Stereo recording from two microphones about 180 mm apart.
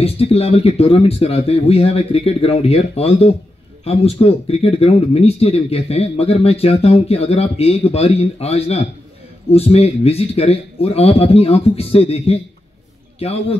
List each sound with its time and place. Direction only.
0.0 s speech: 35° left (ahead or behind)